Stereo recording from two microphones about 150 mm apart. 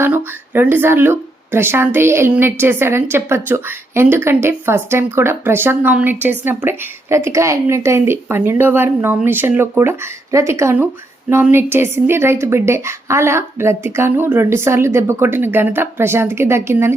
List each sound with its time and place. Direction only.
0.0 s a woman's voice: 15° right (ahead or behind)